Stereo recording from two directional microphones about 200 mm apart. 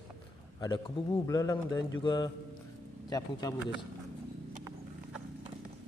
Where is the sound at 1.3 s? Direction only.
15° left (ahead or behind).